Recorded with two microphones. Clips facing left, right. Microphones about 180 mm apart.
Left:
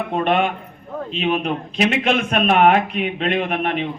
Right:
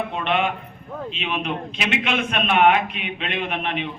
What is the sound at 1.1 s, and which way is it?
A man's voice, 40° left (ahead or behind).